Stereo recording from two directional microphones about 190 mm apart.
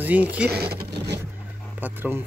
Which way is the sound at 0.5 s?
55° right (ahead or behind).